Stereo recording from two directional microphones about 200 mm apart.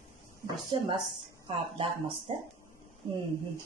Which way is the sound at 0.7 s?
25° right (ahead or behind).